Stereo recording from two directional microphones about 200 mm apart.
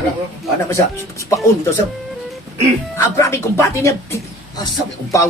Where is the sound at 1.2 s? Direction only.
15° left (ahead or behind).